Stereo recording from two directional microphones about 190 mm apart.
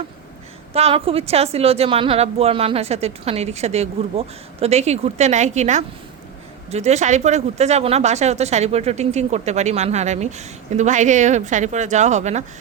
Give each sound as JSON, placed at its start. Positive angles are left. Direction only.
{"t": 0.7, "sound": "speech", "side_deg": -30}